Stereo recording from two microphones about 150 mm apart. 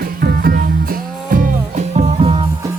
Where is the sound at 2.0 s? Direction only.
45° right (ahead or behind).